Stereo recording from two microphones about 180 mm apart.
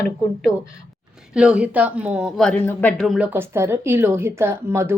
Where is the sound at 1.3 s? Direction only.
5° right (ahead or behind).